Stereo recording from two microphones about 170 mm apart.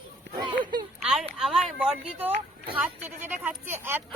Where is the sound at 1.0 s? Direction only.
5° right (ahead or behind).